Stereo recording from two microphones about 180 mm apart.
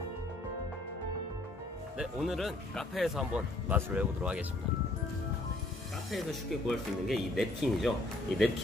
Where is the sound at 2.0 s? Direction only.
Centre (ahead or behind).